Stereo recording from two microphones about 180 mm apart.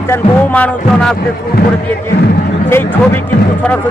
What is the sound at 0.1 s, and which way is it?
Speech, 10° left (ahead or behind).